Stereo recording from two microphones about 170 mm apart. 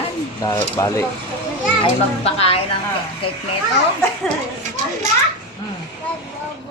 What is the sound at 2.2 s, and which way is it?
Speech, 35° left (ahead or behind).